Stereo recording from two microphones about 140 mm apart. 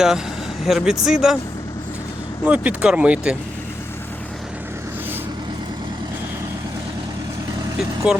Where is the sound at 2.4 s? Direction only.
10° right (ahead or behind).